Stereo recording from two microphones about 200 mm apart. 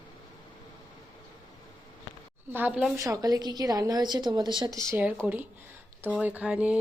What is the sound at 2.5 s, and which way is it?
Speech, 5° right (ahead or behind).